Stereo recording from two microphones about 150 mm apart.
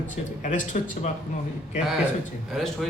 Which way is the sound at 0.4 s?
55° left (ahead or behind).